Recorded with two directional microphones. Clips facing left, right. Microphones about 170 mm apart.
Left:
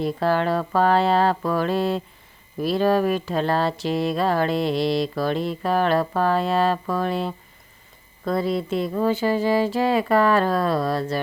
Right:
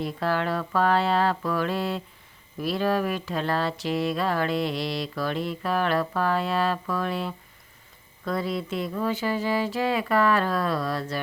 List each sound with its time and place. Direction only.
0.0 s speech: 35° left (ahead or behind)